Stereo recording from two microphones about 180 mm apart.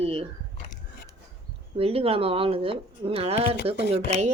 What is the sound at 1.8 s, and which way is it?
Speech, 30° right (ahead or behind).